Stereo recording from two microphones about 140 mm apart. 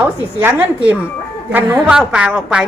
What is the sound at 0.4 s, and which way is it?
A woman's voice, 10° right (ahead or behind).